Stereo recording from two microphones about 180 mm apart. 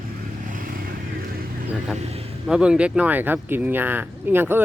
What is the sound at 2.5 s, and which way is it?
Speech, 5° right (ahead or behind).